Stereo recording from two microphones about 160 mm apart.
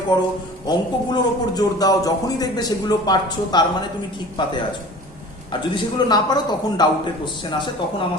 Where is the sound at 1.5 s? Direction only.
25° left (ahead or behind).